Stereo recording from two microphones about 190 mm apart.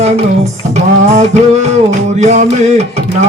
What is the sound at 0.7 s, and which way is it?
Music, 35° right (ahead or behind).